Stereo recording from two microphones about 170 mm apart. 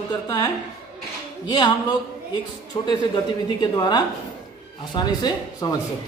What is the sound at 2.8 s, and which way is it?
Speech, 25° left (ahead or behind).